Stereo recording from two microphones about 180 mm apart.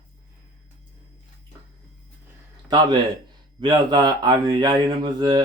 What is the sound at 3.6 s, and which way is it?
Speech, 25° right (ahead or behind).